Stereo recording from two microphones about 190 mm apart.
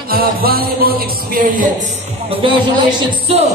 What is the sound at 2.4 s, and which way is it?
Speech, 25° right (ahead or behind).